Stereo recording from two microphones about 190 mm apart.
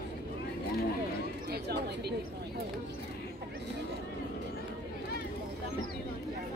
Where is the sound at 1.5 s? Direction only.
60° right (ahead or behind).